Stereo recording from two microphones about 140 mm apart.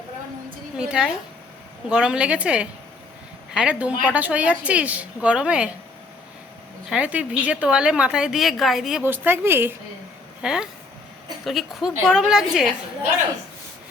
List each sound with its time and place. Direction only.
0.8 s a woman's voice: 5° right (ahead or behind)
6.9 s a woman's voice: 10° right (ahead or behind)
9.0 s a woman's voice: 15° right (ahead or behind)
10.4 s a woman's voice: 5° right (ahead or behind)